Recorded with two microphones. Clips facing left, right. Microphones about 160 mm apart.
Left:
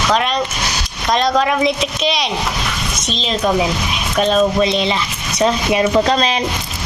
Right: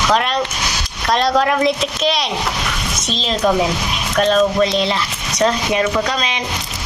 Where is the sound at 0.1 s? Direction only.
Centre (ahead or behind).